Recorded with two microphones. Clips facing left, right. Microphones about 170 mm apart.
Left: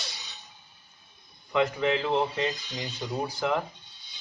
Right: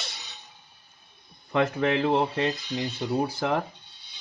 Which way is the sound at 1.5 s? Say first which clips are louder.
Right 1 dB; 55° right (ahead or behind).